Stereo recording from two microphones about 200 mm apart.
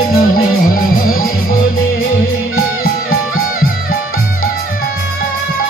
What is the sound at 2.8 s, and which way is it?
Music, 45° left (ahead or behind).